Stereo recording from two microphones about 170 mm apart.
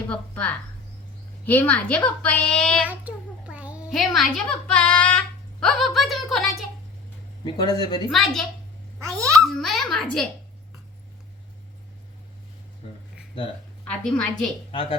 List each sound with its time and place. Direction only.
0.1 s a woman's voice: 10° left (ahead or behind)
2.8 s a child's voice: 10° right (ahead or behind)
7.4 s speech: 25° left (ahead or behind)
8.1 s speech: centre (ahead or behind)
9.1 s a child's voice: 20° right (ahead or behind)
9.4 s speech: centre (ahead or behind)
13.8 s speech: 5° left (ahead or behind)
14.7 s speech: 30° left (ahead or behind)